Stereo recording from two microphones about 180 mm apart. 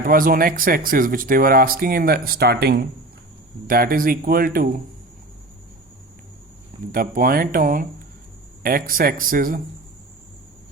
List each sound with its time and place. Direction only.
0.0 s speech: 55° right (ahead or behind)
3.7 s speech: 50° right (ahead or behind)
6.9 s speech: 55° right (ahead or behind)